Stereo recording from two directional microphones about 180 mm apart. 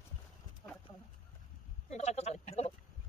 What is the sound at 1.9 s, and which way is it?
Speech, 40° left (ahead or behind).